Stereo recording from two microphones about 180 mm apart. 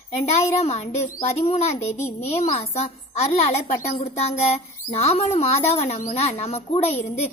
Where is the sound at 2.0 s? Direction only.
35° left (ahead or behind).